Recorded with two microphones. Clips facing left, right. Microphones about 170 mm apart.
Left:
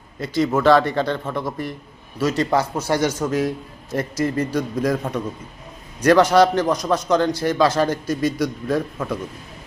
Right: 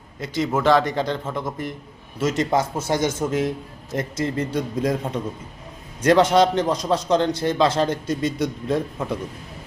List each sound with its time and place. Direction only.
0.2 s a man's voice: 20° right (ahead or behind)